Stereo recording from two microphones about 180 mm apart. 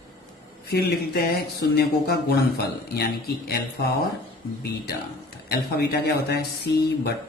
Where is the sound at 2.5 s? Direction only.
65° left (ahead or behind).